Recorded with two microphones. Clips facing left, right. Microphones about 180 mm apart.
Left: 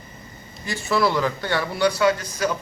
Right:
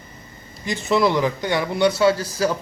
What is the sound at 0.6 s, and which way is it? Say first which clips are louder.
Speech: right 3 dB; 20° right (ahead or behind).